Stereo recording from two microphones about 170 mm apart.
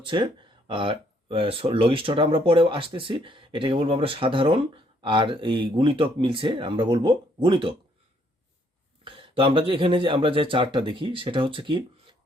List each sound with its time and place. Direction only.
0.0 s speech: 30° right (ahead or behind)
9.0 s speech: 30° right (ahead or behind)